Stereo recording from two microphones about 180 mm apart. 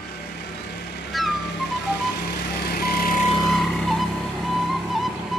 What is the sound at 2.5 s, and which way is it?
Vehicle, 60° left (ahead or behind).